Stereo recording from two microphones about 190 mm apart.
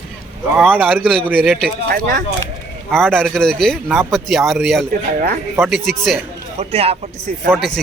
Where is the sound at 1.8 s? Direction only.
45° right (ahead or behind).